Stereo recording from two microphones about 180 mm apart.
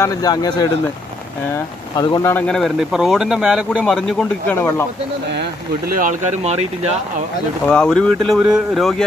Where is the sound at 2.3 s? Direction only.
5° left (ahead or behind).